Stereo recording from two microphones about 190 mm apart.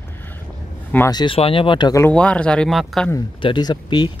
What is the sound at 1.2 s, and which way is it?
Speech, 30° left (ahead or behind).